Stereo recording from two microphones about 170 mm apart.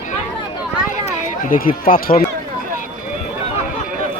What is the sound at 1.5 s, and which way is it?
Speech, 60° left (ahead or behind).